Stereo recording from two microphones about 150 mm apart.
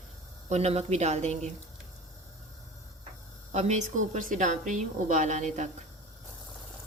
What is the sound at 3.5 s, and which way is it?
A woman's voice, 50° right (ahead or behind).